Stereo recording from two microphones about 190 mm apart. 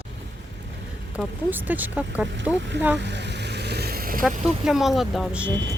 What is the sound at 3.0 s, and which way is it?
Vehicle, 65° right (ahead or behind).